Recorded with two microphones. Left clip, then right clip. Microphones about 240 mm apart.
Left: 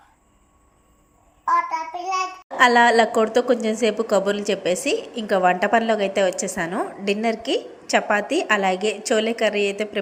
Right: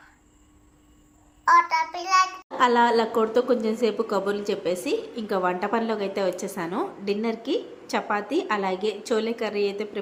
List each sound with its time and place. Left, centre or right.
1.7 s child singing: right
2.6 s a woman's voice: centre